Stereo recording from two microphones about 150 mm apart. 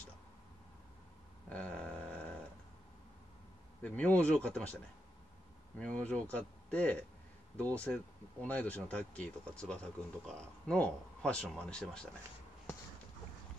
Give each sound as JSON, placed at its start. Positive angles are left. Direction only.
{"t": 1.5, "sound": "a sound", "side_deg": 10}
{"t": 3.8, "sound": "speech", "side_deg": 10}
{"t": 5.8, "sound": "speech", "side_deg": 10}